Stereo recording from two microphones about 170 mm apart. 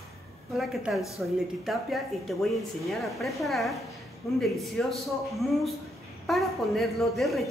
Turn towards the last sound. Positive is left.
turn(degrees=0)  # may be behind; listen again after turning